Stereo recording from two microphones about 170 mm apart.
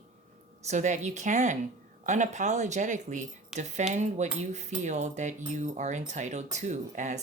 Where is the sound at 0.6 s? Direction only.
45° right (ahead or behind).